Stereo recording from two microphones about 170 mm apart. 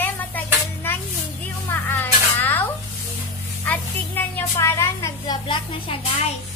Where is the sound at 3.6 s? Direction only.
10° left (ahead or behind).